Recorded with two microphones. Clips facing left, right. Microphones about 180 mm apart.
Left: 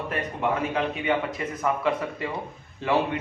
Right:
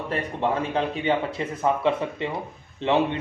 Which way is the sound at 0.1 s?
30° right (ahead or behind).